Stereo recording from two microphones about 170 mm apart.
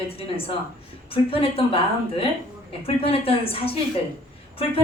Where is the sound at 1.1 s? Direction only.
35° left (ahead or behind).